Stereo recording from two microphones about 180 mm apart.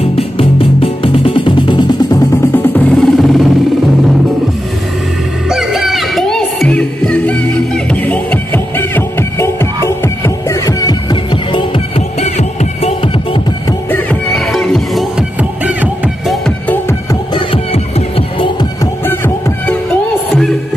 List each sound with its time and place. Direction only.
0.0 s music: 30° left (ahead or behind); by 3.4 s centre (ahead or behind)
5.5 s music: centre (ahead or behind); by 11.8 s 25° left (ahead or behind)
12.2 s music: 35° left (ahead or behind)
13.8 s music: 10° left (ahead or behind); by 16.3 s 5° right (ahead or behind)
16.4 s music: 10° left (ahead or behind)
17.1 s music: 25° left (ahead or behind)
19.0 s music: 10° left (ahead or behind)